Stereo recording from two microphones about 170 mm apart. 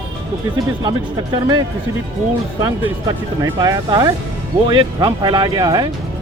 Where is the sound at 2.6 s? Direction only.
20° right (ahead or behind).